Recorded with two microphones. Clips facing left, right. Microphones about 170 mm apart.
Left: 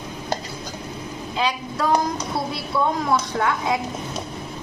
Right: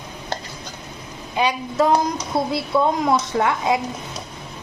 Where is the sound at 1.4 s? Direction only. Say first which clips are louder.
Right 5 dB; 20° right (ahead or behind).